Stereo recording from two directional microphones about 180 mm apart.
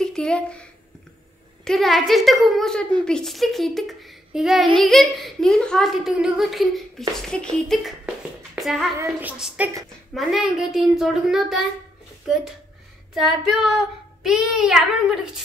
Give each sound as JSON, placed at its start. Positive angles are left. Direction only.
{"t": 0.0, "sound": "a woman's voice", "side_deg": 5}
{"t": 8.5, "sound": "child singing", "side_deg": 0}
{"t": 8.9, "sound": "female singing", "side_deg": -15}
{"t": 10.1, "sound": "a woman's voice", "side_deg": 0}
{"t": 13.1, "sound": "a woman's voice", "side_deg": 0}